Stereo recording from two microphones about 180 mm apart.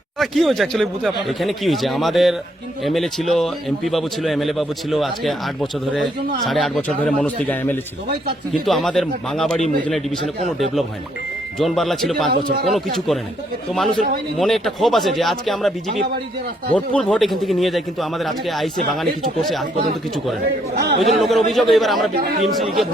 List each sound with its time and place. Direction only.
0.2 s a man's voice: centre (ahead or behind)
11.6 s speech: centre (ahead or behind)
14.3 s speech: centre (ahead or behind)
16.7 s speech: 5° left (ahead or behind)
20.7 s speech: 65° right (ahead or behind)
21.2 s speech: centre (ahead or behind)